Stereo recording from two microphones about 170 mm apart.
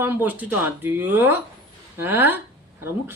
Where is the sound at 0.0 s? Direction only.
10° right (ahead or behind).